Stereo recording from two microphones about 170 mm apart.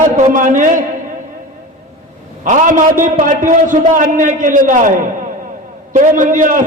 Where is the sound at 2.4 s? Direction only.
50° right (ahead or behind).